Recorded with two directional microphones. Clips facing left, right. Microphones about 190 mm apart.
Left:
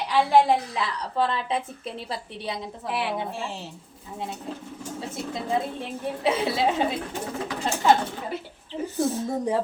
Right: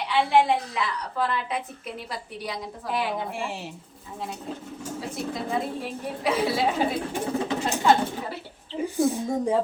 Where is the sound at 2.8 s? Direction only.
Centre (ahead or behind).